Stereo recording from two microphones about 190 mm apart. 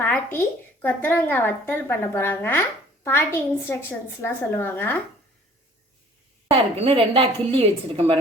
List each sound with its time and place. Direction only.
0.0 s speech: 10° left (ahead or behind)
6.5 s a woman's voice: 30° right (ahead or behind)